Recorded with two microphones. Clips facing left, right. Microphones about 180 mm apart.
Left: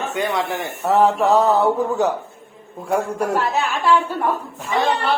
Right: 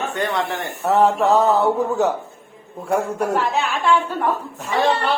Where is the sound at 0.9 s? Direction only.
Centre (ahead or behind).